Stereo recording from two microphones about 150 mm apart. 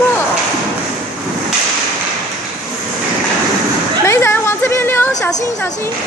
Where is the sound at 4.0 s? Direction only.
15° left (ahead or behind).